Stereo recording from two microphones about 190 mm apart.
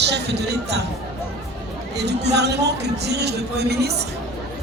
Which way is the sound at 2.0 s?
60° right (ahead or behind).